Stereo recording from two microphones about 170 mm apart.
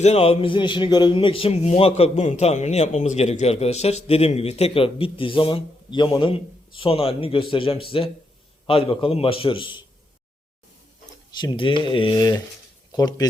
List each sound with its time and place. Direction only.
0.0 s a man's voice: 40° left (ahead or behind)
11.3 s speech: 30° left (ahead or behind)